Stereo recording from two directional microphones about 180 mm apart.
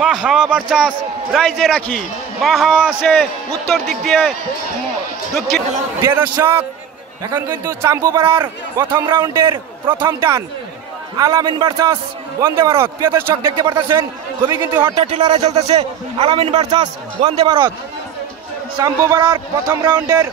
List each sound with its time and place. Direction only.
0.0 s a man's voice: 5° right (ahead or behind)
5.9 s a man's voice: 15° right (ahead or behind)
13.3 s speech: 25° right (ahead or behind)
15.0 s a man's voice: 35° right (ahead or behind)
18.8 s speech: 15° right (ahead or behind)